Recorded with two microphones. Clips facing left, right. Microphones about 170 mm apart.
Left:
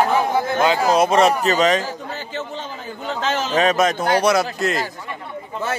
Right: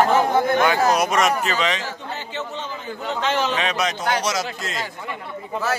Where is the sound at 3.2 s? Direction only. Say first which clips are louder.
Left 4 dB; 40° left (ahead or behind).